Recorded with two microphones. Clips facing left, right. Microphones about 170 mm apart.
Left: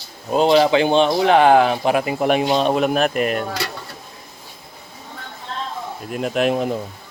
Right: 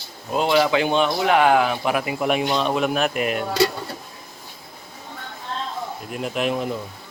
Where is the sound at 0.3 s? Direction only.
30° left (ahead or behind).